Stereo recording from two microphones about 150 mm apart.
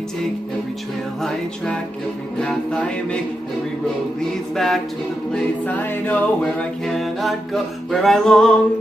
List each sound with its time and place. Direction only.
2.3 s a capella: 5° left (ahead or behind)
4.2 s a capella: centre (ahead or behind)